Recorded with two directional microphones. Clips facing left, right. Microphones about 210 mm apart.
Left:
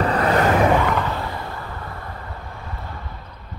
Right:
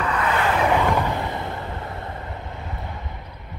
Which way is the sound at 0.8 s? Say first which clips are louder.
Right 1 dB; 15° right (ahead or behind).